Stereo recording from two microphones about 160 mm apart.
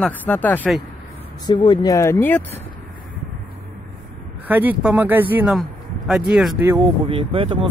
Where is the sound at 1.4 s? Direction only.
30° left (ahead or behind).